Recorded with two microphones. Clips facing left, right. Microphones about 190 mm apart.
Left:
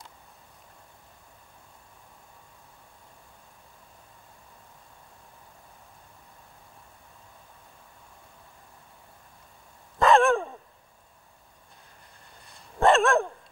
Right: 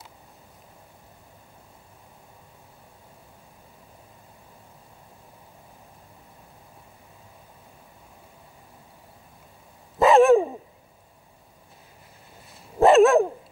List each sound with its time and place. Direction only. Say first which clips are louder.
9.9 s dog: right 5 dB; centre (ahead or behind)
12.8 s dog: right 6 dB; 5° right (ahead or behind)